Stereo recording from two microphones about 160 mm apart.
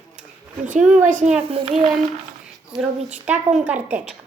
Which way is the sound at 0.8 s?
5° right (ahead or behind).